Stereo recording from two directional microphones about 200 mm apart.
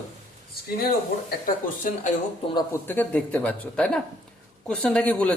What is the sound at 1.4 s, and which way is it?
Speech, 40° left (ahead or behind).